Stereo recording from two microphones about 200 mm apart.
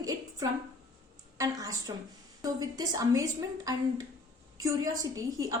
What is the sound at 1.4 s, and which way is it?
A woman's voice, 15° right (ahead or behind).